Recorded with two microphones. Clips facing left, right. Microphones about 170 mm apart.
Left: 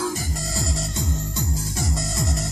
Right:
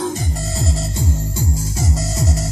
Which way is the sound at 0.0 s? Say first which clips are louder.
Right 4 dB; 25° right (ahead or behind).